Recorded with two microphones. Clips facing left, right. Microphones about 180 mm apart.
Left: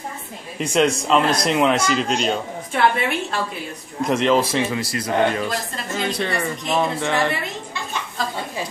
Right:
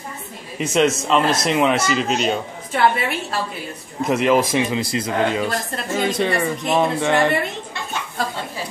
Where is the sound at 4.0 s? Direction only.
5° right (ahead or behind); by 5.4 s 25° right (ahead or behind).